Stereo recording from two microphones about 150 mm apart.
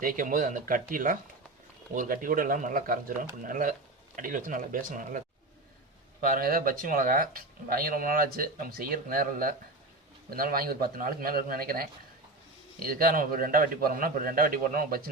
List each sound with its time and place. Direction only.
0.0 s speech: 65° right (ahead or behind)
6.2 s speech: 75° right (ahead or behind)